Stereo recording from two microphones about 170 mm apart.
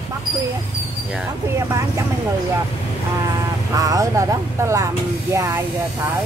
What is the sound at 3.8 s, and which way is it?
Speech, 20° right (ahead or behind).